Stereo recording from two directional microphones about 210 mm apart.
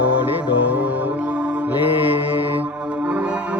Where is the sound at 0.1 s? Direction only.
10° right (ahead or behind).